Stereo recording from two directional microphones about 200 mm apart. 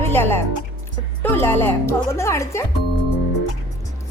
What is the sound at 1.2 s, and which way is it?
Speech, 10° left (ahead or behind).